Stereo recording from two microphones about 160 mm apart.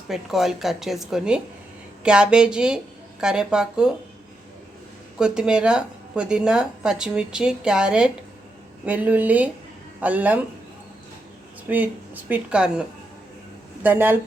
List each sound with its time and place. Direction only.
0.1 s speech: centre (ahead or behind)
5.2 s speech: 5° right (ahead or behind)
11.7 s speech: 10° right (ahead or behind)
13.8 s speech: 10° right (ahead or behind)